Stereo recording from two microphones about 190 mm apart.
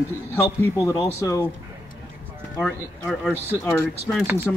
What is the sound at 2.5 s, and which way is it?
Speech, centre (ahead or behind).